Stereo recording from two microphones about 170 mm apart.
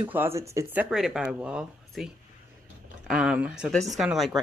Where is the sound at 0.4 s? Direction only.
15° right (ahead or behind).